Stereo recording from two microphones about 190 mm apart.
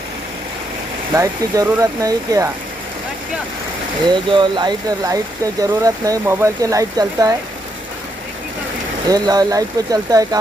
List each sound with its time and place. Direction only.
1.1 s speech: 15° right (ahead or behind)
4.1 s speech: 25° right (ahead or behind)
9.0 s speech: 20° right (ahead or behind)